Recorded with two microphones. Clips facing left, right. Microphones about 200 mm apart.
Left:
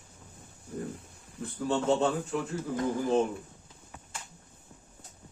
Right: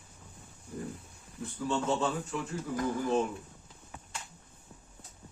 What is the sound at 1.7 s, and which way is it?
Speech, 55° left (ahead or behind).